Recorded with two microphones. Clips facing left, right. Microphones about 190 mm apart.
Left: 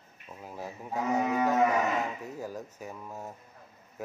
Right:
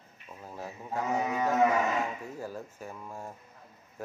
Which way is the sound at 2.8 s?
5° left (ahead or behind).